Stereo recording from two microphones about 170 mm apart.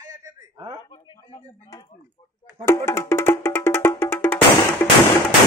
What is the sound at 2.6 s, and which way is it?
Music, 15° left (ahead or behind).